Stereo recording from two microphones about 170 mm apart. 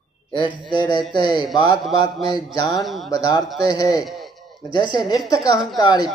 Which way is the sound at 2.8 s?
Centre (ahead or behind).